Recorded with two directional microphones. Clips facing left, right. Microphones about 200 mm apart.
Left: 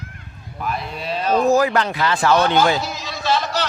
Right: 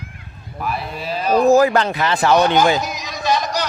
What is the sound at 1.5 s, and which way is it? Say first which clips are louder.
Speech: right 4 dB; 40° right (ahead or behind).